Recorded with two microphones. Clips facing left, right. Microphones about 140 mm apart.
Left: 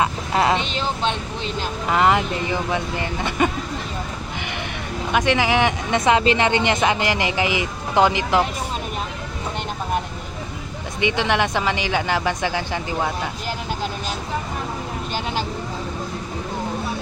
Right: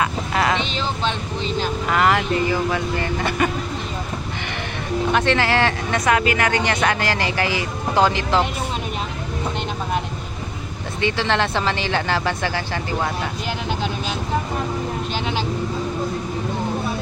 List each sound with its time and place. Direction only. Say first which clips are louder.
0.0 s a sound: left 1 dB; 25° left (ahead or behind)
1.9 s speech: left 1 dB; 20° left (ahead or behind)
5.1 s speech: left 2 dB; 10° left (ahead or behind)
11.0 s speech: even; 15° left (ahead or behind)